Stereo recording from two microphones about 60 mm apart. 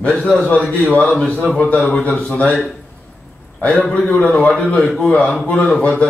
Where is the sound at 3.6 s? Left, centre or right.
Left.